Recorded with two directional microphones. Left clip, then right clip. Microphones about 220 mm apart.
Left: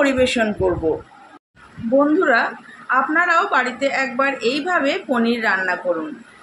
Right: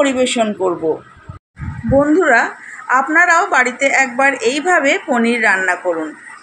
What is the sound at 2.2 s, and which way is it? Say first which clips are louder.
A woman's voice: right 4 dB; 30° right (ahead or behind).